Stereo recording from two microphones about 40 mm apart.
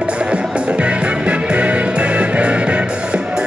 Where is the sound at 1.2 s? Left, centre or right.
Right.